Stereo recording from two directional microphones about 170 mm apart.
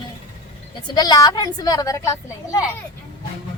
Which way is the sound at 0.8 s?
25° left (ahead or behind).